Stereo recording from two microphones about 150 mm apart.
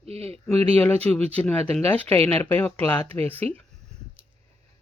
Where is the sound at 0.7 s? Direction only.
10° left (ahead or behind).